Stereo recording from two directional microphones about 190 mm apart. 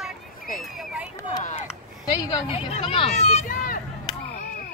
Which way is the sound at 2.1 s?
25° left (ahead or behind).